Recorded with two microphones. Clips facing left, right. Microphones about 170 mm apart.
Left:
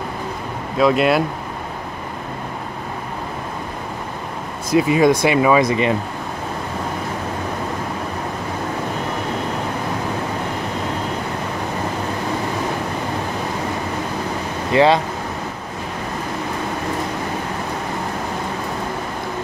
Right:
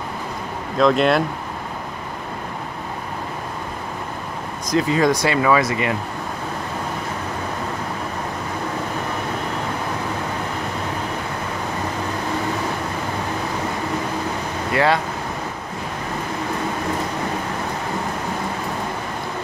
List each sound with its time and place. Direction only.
0.7 s speech: 5° left (ahead or behind)
4.6 s speech: 15° left (ahead or behind)
14.7 s speech: 20° left (ahead or behind)